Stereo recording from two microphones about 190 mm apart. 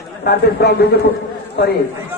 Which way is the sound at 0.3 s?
60° left (ahead or behind).